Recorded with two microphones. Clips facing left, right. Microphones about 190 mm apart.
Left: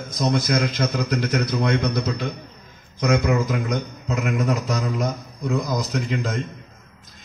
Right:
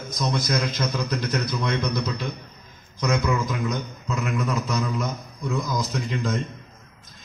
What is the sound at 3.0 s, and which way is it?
A man's voice, 50° left (ahead or behind).